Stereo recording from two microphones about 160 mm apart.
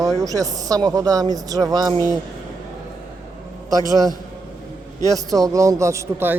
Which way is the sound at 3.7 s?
25° right (ahead or behind).